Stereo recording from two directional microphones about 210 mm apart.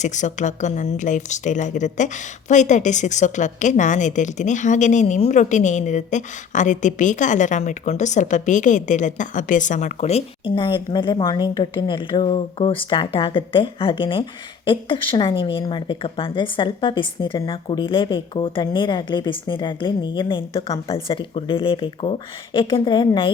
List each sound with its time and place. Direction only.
0.0 s a woman's voice: 35° left (ahead or behind)